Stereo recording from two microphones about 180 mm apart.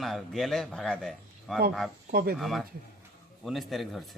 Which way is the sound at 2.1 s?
55° right (ahead or behind).